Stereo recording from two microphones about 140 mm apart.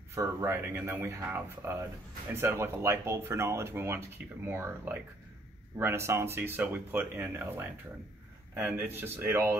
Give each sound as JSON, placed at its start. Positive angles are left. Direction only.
{"t": 0.1, "sound": "speech", "side_deg": -20}